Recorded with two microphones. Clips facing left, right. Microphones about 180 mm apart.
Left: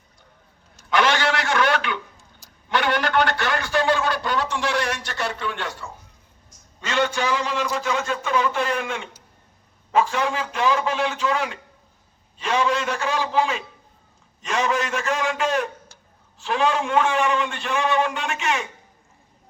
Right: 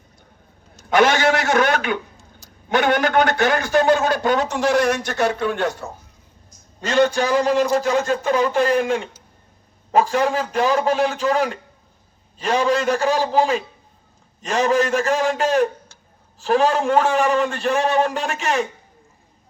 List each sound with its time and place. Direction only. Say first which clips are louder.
0.9 s a man's voice: right 5 dB; 45° right (ahead or behind)